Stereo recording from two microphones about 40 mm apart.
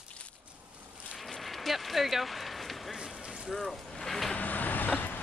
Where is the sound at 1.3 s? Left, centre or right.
Centre.